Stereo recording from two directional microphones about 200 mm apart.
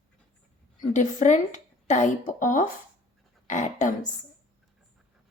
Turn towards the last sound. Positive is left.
turn(degrees=40)  # may be behind; listen again after turning